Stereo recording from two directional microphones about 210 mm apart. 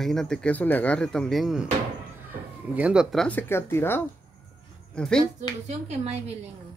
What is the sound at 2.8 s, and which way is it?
Speech, 5° right (ahead or behind).